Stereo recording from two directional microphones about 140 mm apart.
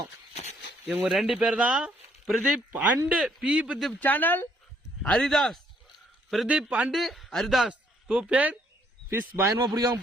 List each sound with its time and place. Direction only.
0.9 s speech: 5° right (ahead or behind)
4.0 s a man's voice: 10° left (ahead or behind); by 10.0 s 25° right (ahead or behind)